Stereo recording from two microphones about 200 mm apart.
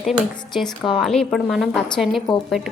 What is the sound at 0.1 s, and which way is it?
A woman's voice, centre (ahead or behind).